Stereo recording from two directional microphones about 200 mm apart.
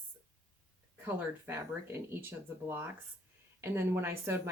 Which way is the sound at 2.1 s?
10° right (ahead or behind).